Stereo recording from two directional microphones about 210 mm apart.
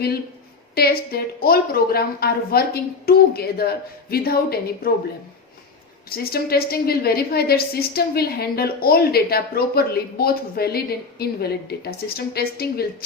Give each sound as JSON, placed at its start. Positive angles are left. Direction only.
{"t": 0.8, "sound": "a woman's voice", "side_deg": 45}
{"t": 6.1, "sound": "a woman's voice", "side_deg": 45}